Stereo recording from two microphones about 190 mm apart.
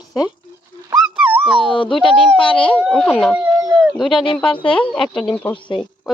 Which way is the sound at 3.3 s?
5° right (ahead or behind).